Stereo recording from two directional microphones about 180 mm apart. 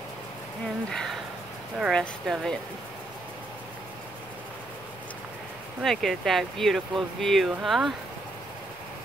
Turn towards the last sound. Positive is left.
turn(degrees=0)  # may be behind; listen again after turning